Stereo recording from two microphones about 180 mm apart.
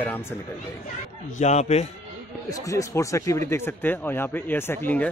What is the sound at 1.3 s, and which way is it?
Speech, 40° left (ahead or behind).